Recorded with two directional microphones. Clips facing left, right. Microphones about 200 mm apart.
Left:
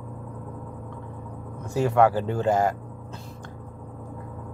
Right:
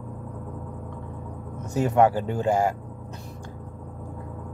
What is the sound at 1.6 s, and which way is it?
Speech, 20° right (ahead or behind).